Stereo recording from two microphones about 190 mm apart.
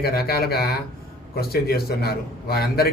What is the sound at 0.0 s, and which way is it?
A man's voice, 55° left (ahead or behind).